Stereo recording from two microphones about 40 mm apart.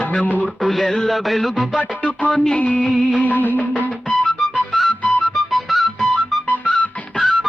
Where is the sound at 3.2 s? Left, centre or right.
Left.